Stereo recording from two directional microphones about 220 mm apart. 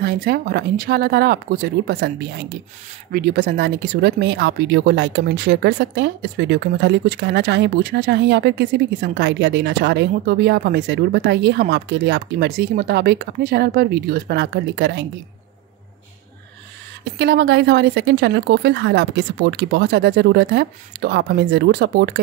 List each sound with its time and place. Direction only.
0.0 s speech: 45° right (ahead or behind)
17.0 s speech: 50° right (ahead or behind)